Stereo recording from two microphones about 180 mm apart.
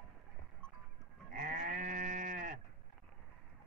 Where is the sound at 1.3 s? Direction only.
45° right (ahead or behind).